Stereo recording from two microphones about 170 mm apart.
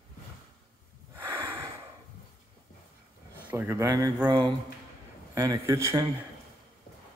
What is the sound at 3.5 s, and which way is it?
A man's voice, 15° right (ahead or behind).